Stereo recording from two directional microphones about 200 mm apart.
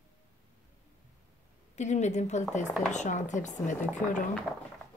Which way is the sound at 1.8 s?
35° left (ahead or behind).